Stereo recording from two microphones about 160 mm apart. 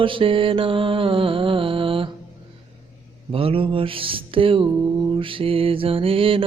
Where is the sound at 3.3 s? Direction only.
35° right (ahead or behind).